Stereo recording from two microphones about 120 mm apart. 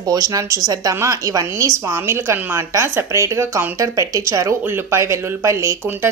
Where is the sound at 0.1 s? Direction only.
30° right (ahead or behind).